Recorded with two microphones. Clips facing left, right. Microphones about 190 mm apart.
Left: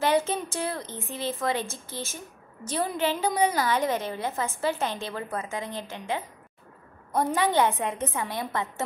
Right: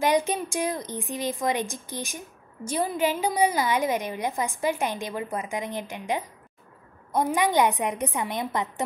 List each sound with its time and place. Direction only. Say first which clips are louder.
0.0 s a woman's voice: right 1 dB; 15° right (ahead or behind)